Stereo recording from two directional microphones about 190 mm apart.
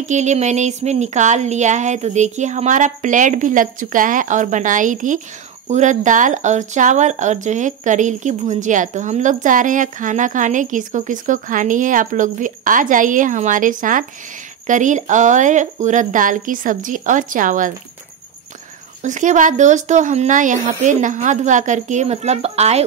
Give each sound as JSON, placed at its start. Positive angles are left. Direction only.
{"t": 0.0, "sound": "speech", "side_deg": -40}
{"t": 19.0, "sound": "speech", "side_deg": -40}